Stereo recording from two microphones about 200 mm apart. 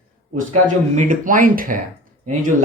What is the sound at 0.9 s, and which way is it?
Speech, 40° right (ahead or behind).